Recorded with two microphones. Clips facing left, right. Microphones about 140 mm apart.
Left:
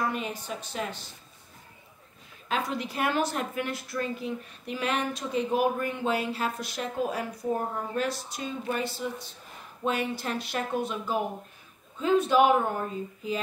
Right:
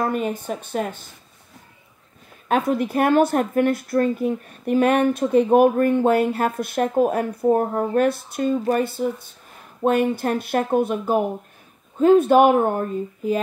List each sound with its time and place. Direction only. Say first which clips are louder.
0.0 s a woman's voice: right 8 dB; 50° right (ahead or behind)
2.4 s a woman's voice: right 10 dB; 55° right (ahead or behind)